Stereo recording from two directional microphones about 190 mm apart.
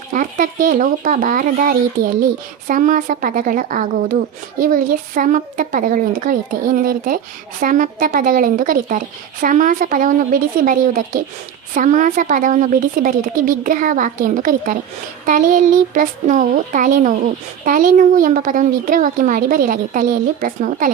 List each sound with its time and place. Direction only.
0.1 s speech: 45° right (ahead or behind)